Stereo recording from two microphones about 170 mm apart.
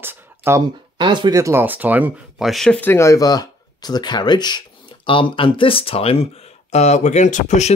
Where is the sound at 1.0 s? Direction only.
25° right (ahead or behind).